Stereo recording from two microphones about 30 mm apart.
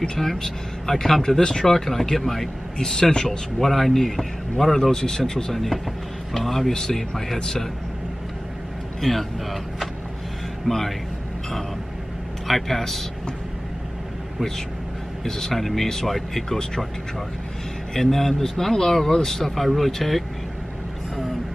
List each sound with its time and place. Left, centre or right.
0.2 s a man's voice: centre
1.4 s speech: left
1.7 s a man's voice: centre
2.8 s speech: left
3.3 s a man's voice: centre
6.7 s speech: left
7.0 s a man's voice: centre
9.0 s a man's voice: centre
12.4 s speech: centre
15.2 s a man's voice: centre
17.9 s a man's voice: centre